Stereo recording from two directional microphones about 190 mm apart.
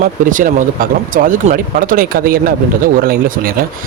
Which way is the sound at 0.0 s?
45° right (ahead or behind).